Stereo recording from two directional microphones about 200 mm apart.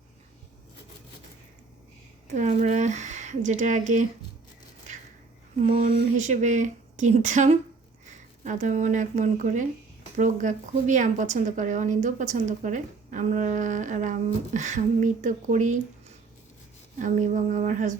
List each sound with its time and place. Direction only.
2.2 s speech: 35° right (ahead or behind)
5.5 s a woman's voice: 35° right (ahead or behind)
17.0 s a woman's voice: 40° right (ahead or behind)